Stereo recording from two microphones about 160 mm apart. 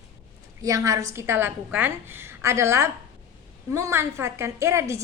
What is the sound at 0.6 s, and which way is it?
A woman's voice, 20° right (ahead or behind).